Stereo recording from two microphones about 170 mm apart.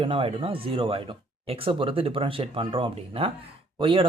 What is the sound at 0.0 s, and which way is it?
Speech, 35° right (ahead or behind).